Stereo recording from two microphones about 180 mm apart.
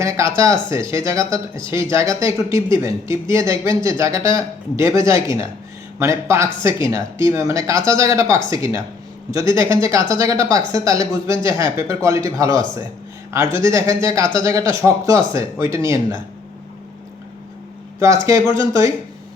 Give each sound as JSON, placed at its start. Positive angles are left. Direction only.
{"t": 0.0, "sound": "speech", "side_deg": -15}
{"t": 18.0, "sound": "speech", "side_deg": -15}